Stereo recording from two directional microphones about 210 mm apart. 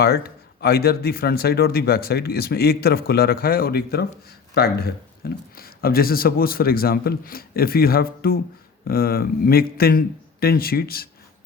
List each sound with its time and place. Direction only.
0.0 s speech: 50° left (ahead or behind)